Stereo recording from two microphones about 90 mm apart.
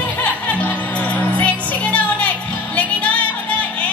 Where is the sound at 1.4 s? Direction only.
15° left (ahead or behind).